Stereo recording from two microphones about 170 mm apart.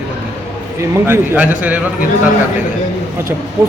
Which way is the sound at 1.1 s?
10° right (ahead or behind).